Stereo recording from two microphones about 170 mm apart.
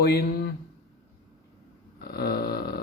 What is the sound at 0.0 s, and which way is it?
Speech, 70° left (ahead or behind).